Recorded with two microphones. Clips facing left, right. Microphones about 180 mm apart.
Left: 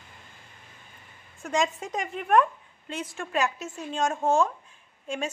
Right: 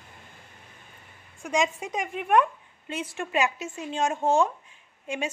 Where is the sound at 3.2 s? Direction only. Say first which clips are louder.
Right 1 dB; 15° right (ahead or behind).